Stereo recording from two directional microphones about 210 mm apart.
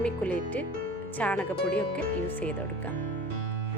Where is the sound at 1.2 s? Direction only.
5° left (ahead or behind).